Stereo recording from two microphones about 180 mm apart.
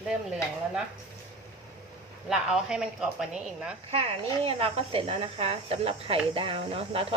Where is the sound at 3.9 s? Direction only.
30° right (ahead or behind).